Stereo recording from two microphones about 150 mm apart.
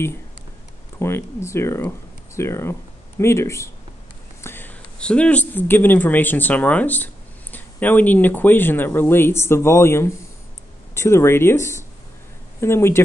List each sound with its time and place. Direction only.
0.9 s speech: 15° left (ahead or behind)